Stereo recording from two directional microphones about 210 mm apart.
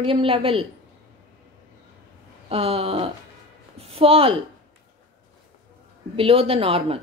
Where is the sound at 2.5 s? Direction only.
30° right (ahead or behind).